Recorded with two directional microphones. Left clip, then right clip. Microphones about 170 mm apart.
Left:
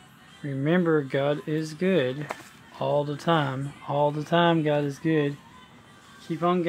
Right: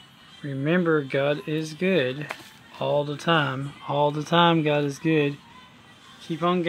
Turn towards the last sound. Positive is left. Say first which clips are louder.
# right 1 dB
turn(degrees=-10)  # may be behind; listen again after turning